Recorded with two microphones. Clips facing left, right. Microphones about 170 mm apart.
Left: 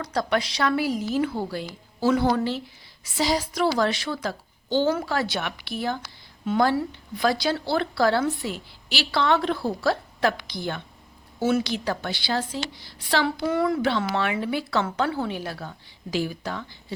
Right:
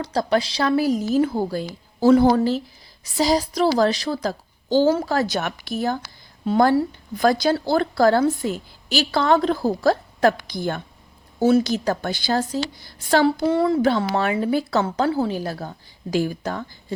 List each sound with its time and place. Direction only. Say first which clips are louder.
0.0 s a woman's voice: right 4 dB; 30° right (ahead or behind)
13.4 s speech: right 5 dB; 30° right (ahead or behind)
13.8 s a woman's voice: right 4 dB; 40° right (ahead or behind)